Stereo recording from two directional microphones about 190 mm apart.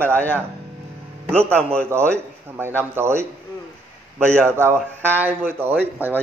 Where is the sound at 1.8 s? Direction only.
15° right (ahead or behind).